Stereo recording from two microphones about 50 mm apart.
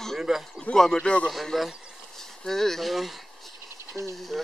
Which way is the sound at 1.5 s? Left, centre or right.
Centre.